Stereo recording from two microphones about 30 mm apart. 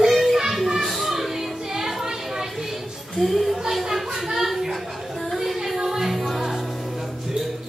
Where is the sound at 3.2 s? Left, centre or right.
Centre.